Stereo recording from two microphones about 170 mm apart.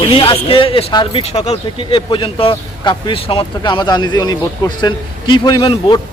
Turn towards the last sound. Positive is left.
turn(degrees=30)  # may be behind; listen again after turning